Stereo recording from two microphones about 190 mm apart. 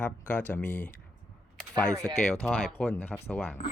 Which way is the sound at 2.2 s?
5° left (ahead or behind).